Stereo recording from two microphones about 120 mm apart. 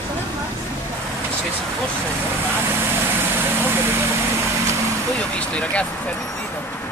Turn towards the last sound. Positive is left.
turn(degrees=10)  # may be behind; listen again after turning